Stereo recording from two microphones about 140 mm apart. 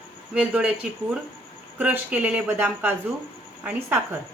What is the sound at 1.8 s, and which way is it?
A woman's voice, 10° right (ahead or behind).